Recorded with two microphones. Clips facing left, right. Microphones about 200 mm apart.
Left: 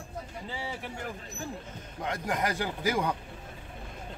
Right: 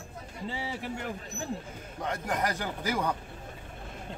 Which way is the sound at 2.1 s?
10° left (ahead or behind).